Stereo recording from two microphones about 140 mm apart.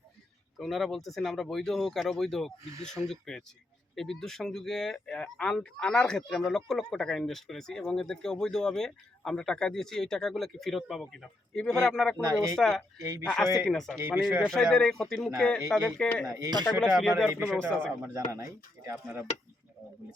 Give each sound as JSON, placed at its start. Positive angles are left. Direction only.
{"t": 0.6, "sound": "speech", "side_deg": 0}
{"t": 12.2, "sound": "speech", "side_deg": -25}
{"t": 12.5, "sound": "speech", "side_deg": 5}
{"t": 14.0, "sound": "speech", "side_deg": -10}
{"t": 14.4, "sound": "speech", "side_deg": 5}
{"t": 18.1, "sound": "speech", "side_deg": -20}